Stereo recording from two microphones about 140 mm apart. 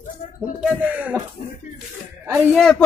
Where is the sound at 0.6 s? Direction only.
10° right (ahead or behind).